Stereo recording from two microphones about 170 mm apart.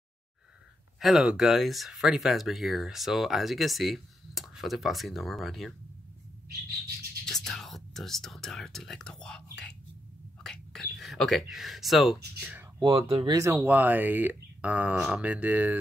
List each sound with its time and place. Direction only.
0.9 s speech: centre (ahead or behind)
7.2 s speech: centre (ahead or behind)
12.7 s speech: 20° right (ahead or behind)